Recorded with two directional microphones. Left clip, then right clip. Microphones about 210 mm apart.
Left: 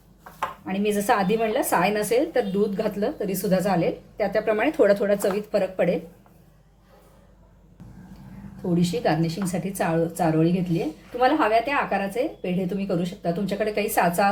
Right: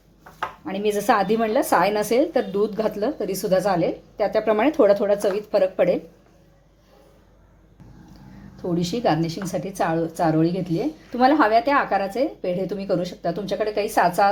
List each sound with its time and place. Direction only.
0.6 s a woman's voice: 25° right (ahead or behind)
8.8 s a woman's voice: 25° right (ahead or behind)